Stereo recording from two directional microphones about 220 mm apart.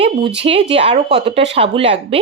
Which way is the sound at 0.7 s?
25° right (ahead or behind).